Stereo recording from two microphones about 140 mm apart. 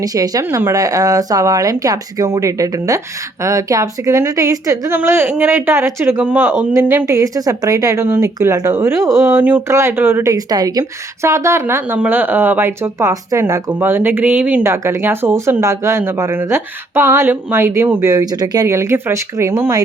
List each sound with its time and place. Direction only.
0.0 s a woman's voice: 25° right (ahead or behind)
18.1 s speech: 25° right (ahead or behind)